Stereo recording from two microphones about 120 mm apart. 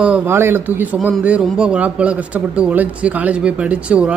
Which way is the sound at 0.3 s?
20° right (ahead or behind).